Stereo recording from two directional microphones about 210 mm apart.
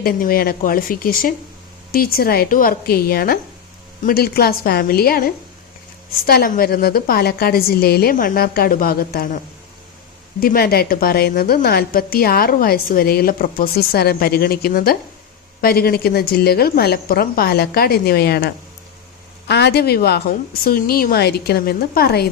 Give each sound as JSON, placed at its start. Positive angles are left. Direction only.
{"t": 0.0, "sound": "a woman's voice", "side_deg": 45}
{"t": 10.4, "sound": "a woman's voice", "side_deg": 45}